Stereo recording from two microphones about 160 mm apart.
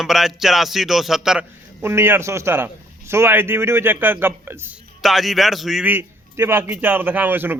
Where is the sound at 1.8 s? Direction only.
15° right (ahead or behind).